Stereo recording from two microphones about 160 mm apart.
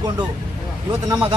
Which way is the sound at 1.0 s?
25° right (ahead or behind).